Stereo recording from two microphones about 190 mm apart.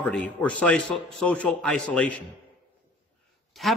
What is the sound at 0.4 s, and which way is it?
A man's voice, 5° left (ahead or behind).